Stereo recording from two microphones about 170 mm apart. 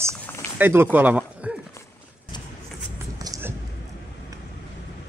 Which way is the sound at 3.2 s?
20° right (ahead or behind).